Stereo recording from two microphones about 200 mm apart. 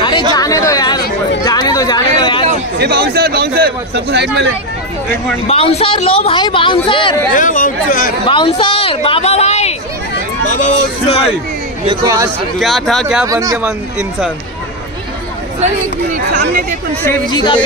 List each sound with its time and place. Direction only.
0.3 s chatter: 20° left (ahead or behind)
1.4 s a sound: 20° left (ahead or behind)
2.8 s a man's voice: 55° right (ahead or behind)
5.5 s speech: 30° left (ahead or behind)
7.3 s speech: 40° left (ahead or behind)
8.3 s a man's voice: 25° left (ahead or behind)
11.9 s speech: 20° right (ahead or behind)
12.5 s speech: centre (ahead or behind)
13.3 s a man's voice: 15° right (ahead or behind)
13.7 s speech: 5° right (ahead or behind)
16.3 s a man's voice: 55° right (ahead or behind)
17.0 s speech: 15° left (ahead or behind)